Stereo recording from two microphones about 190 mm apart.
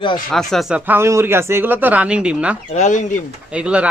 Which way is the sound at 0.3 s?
Centre (ahead or behind).